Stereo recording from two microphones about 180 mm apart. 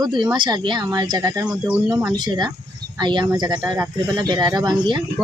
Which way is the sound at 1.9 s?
25° right (ahead or behind).